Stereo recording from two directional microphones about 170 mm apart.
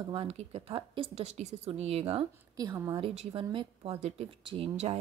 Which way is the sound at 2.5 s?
15° right (ahead or behind).